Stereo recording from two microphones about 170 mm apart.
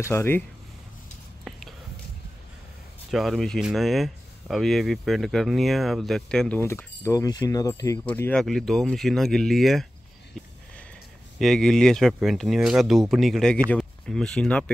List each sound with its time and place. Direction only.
0.0 s speech: 15° left (ahead or behind)
1.5 s whispering: centre (ahead or behind)
3.1 s speech: centre (ahead or behind)
6.6 s speech: 15° left (ahead or behind)
8.0 s speech: 10° left (ahead or behind)
11.3 s speech: centre (ahead or behind)